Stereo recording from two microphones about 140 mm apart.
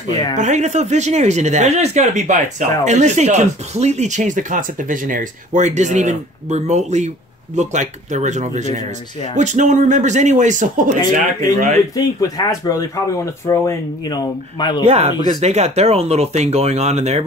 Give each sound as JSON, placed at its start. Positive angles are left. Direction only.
{"t": 0.4, "sound": "speech", "side_deg": -55}
{"t": 11.9, "sound": "speech", "side_deg": 25}
{"t": 14.9, "sound": "speech", "side_deg": -45}